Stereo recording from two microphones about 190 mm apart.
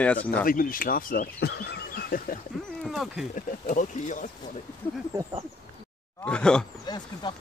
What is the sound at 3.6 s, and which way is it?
Speech, 40° left (ahead or behind).